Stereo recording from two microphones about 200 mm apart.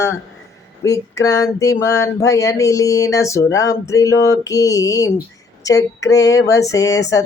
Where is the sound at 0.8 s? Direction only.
15° left (ahead or behind).